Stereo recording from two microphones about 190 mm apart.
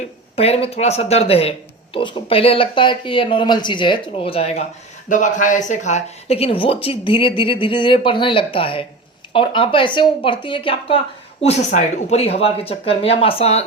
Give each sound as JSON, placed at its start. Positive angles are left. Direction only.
{"t": 0.0, "sound": "speech", "side_deg": 30}